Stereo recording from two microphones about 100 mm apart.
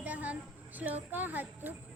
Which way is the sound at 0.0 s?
15° right (ahead or behind).